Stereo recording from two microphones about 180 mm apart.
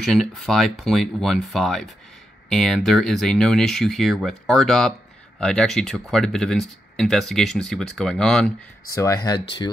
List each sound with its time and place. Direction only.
0.0 s speech: centre (ahead or behind)
8.9 s speech: 15° left (ahead or behind)